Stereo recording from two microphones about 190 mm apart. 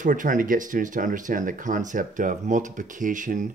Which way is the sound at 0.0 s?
45° right (ahead or behind).